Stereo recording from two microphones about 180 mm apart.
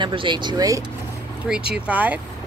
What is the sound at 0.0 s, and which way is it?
Speech, 25° right (ahead or behind).